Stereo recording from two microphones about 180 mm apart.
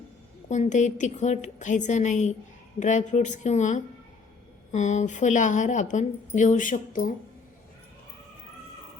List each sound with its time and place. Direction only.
0.4 s a woman's voice: 40° left (ahead or behind)